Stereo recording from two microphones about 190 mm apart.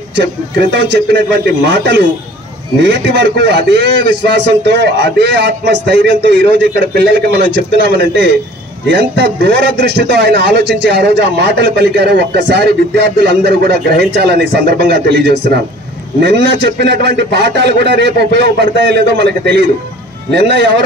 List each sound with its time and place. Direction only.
0.2 s a man's voice: 65° right (ahead or behind)